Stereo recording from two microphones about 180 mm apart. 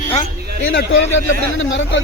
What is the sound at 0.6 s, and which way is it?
A man's voice, 60° left (ahead or behind).